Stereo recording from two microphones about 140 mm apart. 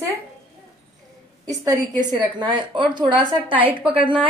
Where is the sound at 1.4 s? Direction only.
25° right (ahead or behind).